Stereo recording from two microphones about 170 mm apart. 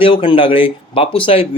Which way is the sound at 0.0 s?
30° left (ahead or behind).